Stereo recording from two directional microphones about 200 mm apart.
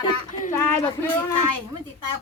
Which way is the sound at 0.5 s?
10° left (ahead or behind).